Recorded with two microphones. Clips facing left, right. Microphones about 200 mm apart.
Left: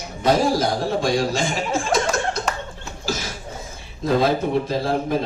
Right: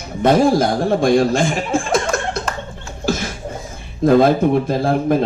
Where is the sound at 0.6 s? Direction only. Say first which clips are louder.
Right 5 dB; 55° right (ahead or behind).